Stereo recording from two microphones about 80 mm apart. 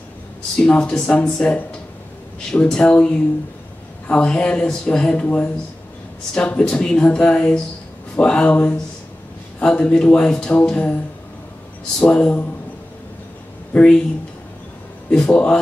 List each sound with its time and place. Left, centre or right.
0.6 s speech: centre
12.0 s speech: centre
13.7 s speech: centre
15.0 s speech: centre